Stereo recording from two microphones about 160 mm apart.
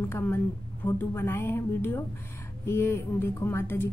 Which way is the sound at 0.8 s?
15° left (ahead or behind).